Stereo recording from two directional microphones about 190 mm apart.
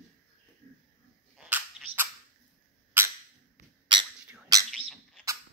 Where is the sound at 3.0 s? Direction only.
10° right (ahead or behind).